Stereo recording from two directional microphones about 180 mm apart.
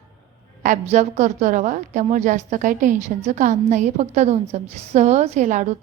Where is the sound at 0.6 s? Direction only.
45° right (ahead or behind).